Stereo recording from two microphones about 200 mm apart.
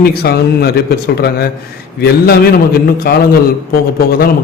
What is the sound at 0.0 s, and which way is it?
A man's voice, 50° left (ahead or behind).